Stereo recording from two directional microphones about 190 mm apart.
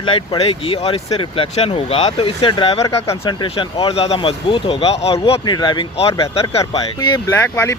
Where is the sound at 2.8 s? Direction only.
15° left (ahead or behind).